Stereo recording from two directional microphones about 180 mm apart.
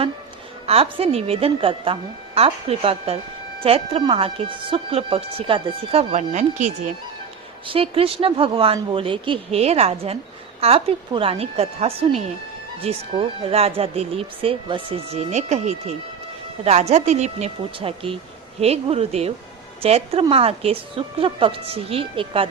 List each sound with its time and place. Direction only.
0.7 s a woman's voice: 35° right (ahead or behind)